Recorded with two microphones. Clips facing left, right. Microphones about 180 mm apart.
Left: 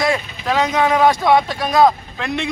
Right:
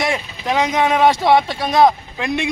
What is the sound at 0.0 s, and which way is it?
Speech, 20° right (ahead or behind).